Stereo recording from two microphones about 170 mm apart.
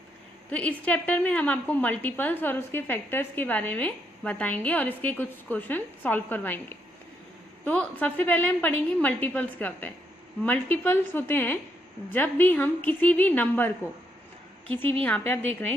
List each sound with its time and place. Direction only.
0.5 s a woman's voice: 10° left (ahead or behind)
14.7 s a woman's voice: 10° left (ahead or behind)